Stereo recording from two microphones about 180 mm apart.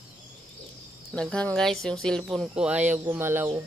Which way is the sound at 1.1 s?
5° left (ahead or behind).